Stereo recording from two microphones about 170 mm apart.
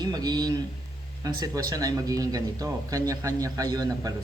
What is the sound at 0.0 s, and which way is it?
A man's voice, 25° right (ahead or behind).